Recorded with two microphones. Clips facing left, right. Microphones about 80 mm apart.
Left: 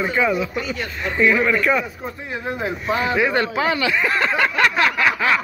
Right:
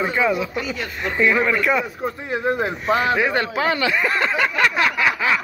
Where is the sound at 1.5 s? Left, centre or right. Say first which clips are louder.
Left 1 dB; centre.